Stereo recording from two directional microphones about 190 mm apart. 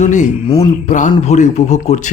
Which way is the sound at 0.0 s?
40° left (ahead or behind).